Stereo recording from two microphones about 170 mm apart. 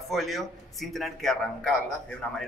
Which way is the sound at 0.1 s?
Centre (ahead or behind).